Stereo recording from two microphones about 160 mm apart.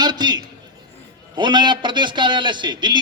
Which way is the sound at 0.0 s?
25° right (ahead or behind).